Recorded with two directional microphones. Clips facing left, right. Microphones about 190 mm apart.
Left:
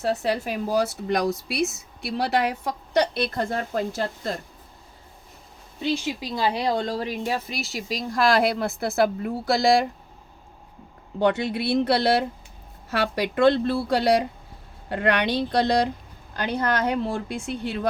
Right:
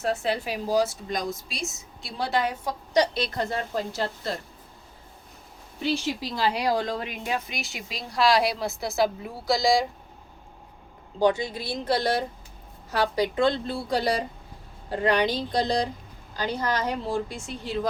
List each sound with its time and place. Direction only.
0.0 s a woman's voice: 35° left (ahead or behind)
6.1 s a woman's voice: 15° left (ahead or behind); by 9.8 s 60° left (ahead or behind)
11.2 s a woman's voice: 65° left (ahead or behind)